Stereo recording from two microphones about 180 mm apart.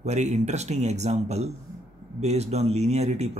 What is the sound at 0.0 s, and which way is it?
Speech, 40° right (ahead or behind).